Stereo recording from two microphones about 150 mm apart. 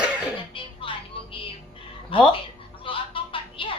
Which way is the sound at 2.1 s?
35° left (ahead or behind).